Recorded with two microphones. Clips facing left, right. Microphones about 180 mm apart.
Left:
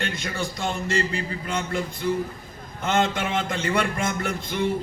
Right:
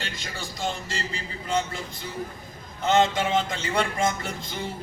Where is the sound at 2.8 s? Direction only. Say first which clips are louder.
Right 2 dB; 55° left (ahead or behind).